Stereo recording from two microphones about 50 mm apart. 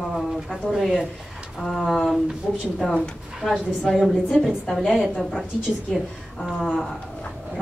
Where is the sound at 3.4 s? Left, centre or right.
Centre.